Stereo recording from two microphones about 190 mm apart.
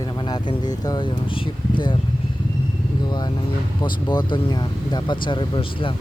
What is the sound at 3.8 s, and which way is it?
Speech, 25° left (ahead or behind).